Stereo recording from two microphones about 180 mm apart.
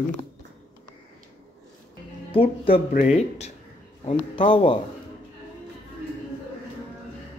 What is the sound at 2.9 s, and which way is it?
Speech, 40° left (ahead or behind).